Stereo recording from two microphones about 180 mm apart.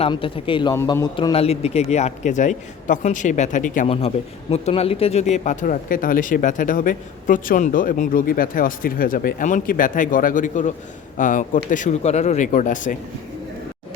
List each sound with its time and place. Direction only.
0.0 s speech: 30° left (ahead or behind)
0.8 s a man's voice: 15° left (ahead or behind)
1.1 s a man's voice: 30° left (ahead or behind); by 13.0 s 45° left (ahead or behind)